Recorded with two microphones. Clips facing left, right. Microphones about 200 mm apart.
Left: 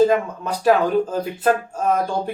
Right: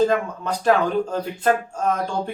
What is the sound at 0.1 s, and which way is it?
Speech, 10° left (ahead or behind).